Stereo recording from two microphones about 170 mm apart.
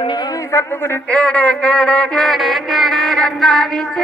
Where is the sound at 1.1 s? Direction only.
5° left (ahead or behind).